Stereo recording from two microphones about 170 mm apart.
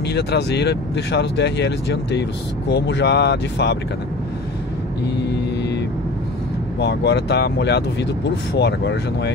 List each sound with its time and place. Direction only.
0.1 s speech: 75° left (ahead or behind)
6.8 s speech: 80° left